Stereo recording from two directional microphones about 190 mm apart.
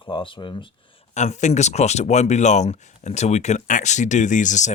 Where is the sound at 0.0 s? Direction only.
25° left (ahead or behind).